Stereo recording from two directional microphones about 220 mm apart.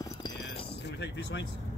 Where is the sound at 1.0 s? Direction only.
55° left (ahead or behind).